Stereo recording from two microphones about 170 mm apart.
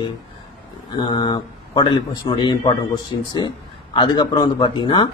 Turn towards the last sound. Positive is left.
turn(degrees=25)  # may be behind; listen again after turning